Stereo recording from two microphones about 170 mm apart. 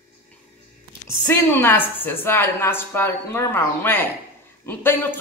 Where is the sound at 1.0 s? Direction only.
15° left (ahead or behind).